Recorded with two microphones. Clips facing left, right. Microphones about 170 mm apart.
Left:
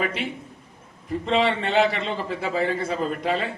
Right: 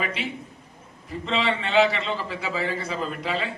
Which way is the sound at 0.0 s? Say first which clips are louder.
Left 3 dB; 50° left (ahead or behind).